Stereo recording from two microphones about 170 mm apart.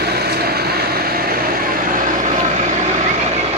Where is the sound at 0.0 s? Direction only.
70° right (ahead or behind); by 2.3 s 50° right (ahead or behind).